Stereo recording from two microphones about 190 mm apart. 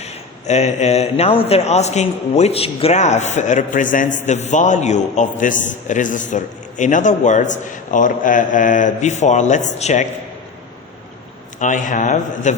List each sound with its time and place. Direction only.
0.0 s a man's voice: 35° left (ahead or behind)
11.6 s a man's voice: 45° left (ahead or behind)